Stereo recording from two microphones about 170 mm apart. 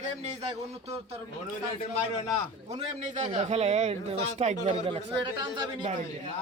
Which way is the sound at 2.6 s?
45° right (ahead or behind).